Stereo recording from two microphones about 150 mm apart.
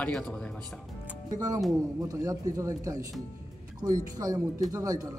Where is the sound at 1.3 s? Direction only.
25° right (ahead or behind).